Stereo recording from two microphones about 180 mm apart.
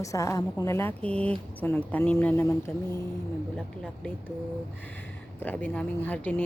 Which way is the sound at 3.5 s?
5° left (ahead or behind).